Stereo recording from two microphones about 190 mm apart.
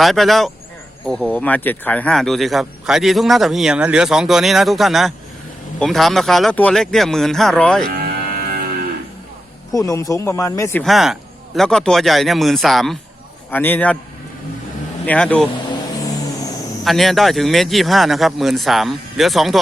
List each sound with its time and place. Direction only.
0.0 s speech: centre (ahead or behind)
7.9 s music: 55° right (ahead or behind)
9.7 s speech: 15° left (ahead or behind)
10.8 s speech: centre (ahead or behind)
15.0 s speech: 5° left (ahead or behind)
16.8 s speech: centre (ahead or behind)